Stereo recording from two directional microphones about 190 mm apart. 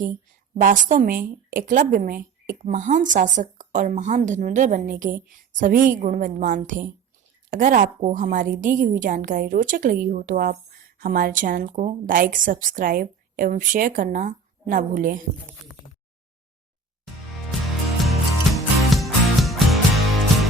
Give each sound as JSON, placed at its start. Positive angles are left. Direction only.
{"t": 0.5, "sound": "a woman's voice", "side_deg": -40}
{"t": 18.0, "sound": "music", "side_deg": 0}